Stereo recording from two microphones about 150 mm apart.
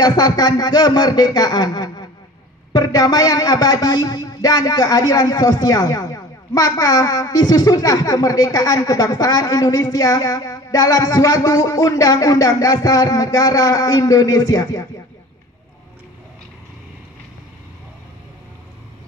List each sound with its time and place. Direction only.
0.0 s speech: 25° left (ahead or behind)